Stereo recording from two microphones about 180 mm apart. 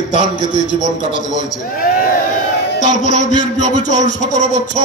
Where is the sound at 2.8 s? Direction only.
45° left (ahead or behind).